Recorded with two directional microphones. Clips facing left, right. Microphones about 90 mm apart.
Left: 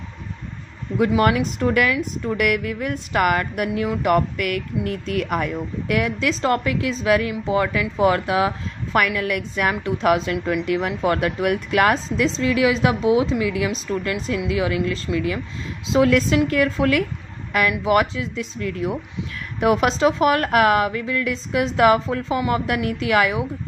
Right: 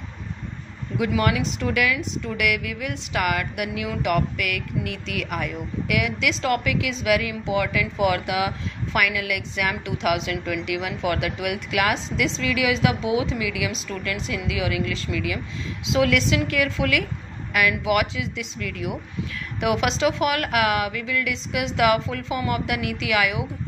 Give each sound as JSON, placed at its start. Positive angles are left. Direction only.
{"t": 1.1, "sound": "speech", "side_deg": 40}